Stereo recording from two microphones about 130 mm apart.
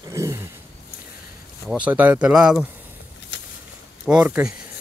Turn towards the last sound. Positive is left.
turn(degrees=-10)  # may be behind; listen again after turning